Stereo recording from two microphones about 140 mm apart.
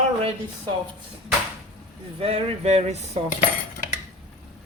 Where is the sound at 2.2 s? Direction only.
45° right (ahead or behind).